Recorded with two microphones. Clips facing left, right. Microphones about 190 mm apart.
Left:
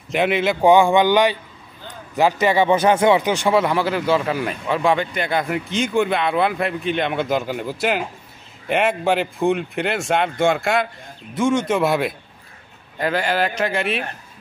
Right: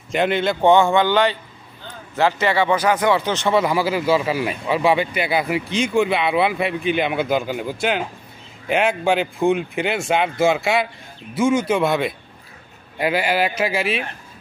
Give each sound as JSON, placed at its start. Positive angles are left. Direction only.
{"t": 0.1, "sound": "speech", "side_deg": 5}
{"t": 3.5, "sound": "speech", "side_deg": -5}
{"t": 12.9, "sound": "speech", "side_deg": -10}